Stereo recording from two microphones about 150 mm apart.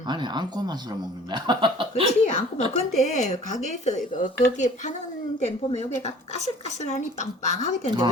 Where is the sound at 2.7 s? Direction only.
50° left (ahead or behind).